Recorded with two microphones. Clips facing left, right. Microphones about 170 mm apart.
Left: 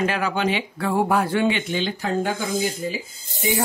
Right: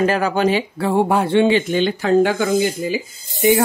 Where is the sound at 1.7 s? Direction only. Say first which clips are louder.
Right 8 dB; 60° right (ahead or behind); by 3.0 s 80° right.